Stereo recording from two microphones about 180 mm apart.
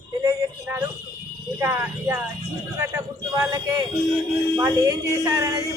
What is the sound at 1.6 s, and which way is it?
A woman's voice, 10° right (ahead or behind).